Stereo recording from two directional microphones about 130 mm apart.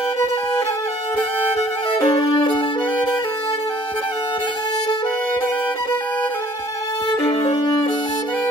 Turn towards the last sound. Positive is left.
turn(degrees=40)  # may be behind; listen again after turning